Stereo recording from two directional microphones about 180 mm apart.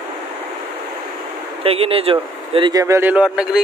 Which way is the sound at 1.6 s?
30° right (ahead or behind).